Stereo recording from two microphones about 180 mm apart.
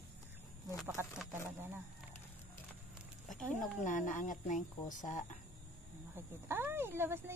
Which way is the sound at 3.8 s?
45° left (ahead or behind).